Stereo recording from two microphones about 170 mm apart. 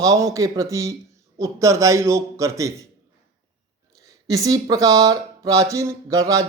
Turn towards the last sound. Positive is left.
turn(degrees=-20)  # may be behind; listen again after turning